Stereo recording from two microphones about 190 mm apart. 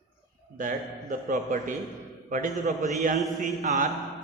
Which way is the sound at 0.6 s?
45° right (ahead or behind).